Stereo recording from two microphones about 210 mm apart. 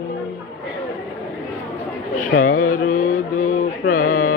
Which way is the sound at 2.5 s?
40° left (ahead or behind).